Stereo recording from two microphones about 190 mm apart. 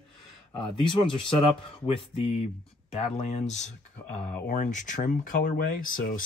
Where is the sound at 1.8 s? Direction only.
30° left (ahead or behind).